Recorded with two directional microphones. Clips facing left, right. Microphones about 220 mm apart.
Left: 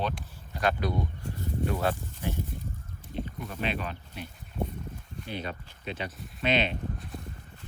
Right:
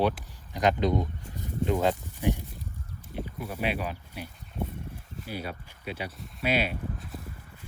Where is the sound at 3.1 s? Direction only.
10° right (ahead or behind).